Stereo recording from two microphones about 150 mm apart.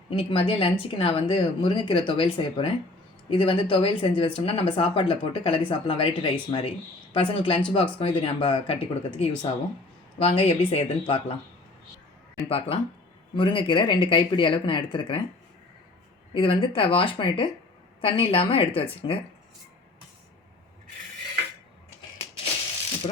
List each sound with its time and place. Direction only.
0.1 s speech: 35° left (ahead or behind)
12.5 s speech: 40° left (ahead or behind)
16.3 s speech: 35° left (ahead or behind)